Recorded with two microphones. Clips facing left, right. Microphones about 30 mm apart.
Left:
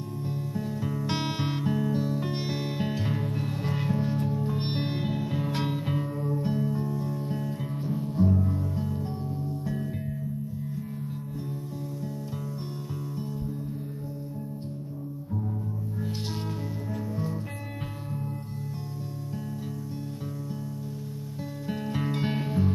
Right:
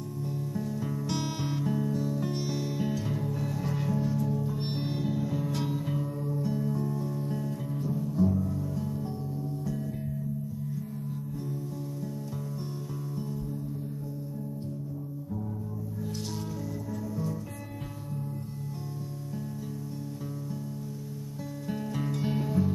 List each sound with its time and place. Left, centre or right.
0.2 s music: left
1.0 s music: left
6.6 s music: left
21.6 s music: left
22.1 s music: left